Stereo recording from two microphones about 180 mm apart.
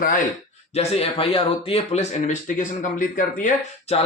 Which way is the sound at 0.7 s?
35° left (ahead or behind).